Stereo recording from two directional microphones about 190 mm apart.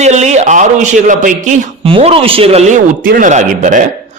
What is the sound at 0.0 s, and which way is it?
A man's voice, 35° right (ahead or behind).